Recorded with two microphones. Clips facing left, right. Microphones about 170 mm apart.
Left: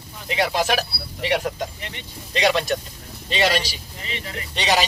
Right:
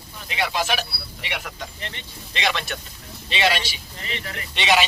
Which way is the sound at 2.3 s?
35° left (ahead or behind).